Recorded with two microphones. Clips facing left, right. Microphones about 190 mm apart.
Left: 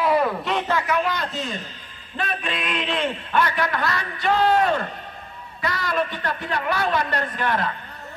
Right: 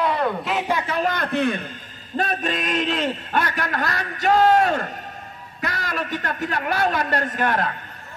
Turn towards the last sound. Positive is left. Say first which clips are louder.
# right 2 dB
turn(degrees=-45)  # may be behind; listen again after turning